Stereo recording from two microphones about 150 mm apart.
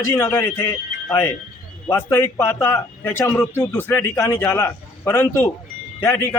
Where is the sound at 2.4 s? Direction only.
20° left (ahead or behind).